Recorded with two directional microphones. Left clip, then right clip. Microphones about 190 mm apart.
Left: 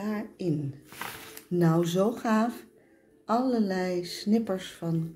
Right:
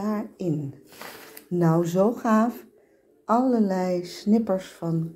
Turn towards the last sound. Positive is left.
turn(degrees=-10)  # may be behind; listen again after turning